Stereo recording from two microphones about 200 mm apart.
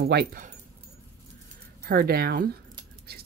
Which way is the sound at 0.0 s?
55° right (ahead or behind).